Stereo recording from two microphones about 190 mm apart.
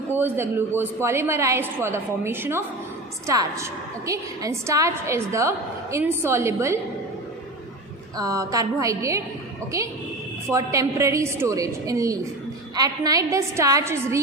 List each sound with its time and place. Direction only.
0.1 s a woman's voice: 10° right (ahead or behind)
8.2 s a woman's voice: 15° right (ahead or behind)